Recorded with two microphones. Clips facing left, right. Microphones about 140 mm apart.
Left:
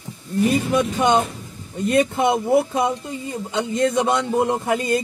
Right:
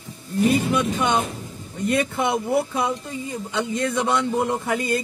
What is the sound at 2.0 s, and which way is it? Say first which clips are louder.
Speech: left 8 dB; 20° left (ahead or behind).